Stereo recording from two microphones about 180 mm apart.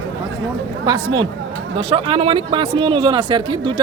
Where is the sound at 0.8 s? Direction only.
25° right (ahead or behind).